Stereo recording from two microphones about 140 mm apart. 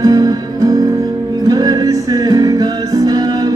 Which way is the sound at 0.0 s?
25° right (ahead or behind).